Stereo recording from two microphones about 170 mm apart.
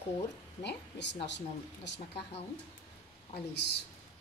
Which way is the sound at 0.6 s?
85° left.